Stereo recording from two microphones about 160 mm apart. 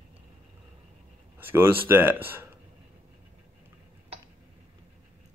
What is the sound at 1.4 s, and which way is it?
Speech, 15° right (ahead or behind).